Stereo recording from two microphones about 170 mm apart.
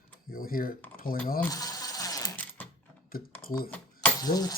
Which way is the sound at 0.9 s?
55° left (ahead or behind).